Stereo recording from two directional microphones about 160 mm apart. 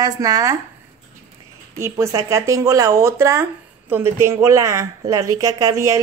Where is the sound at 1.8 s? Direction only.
20° right (ahead or behind).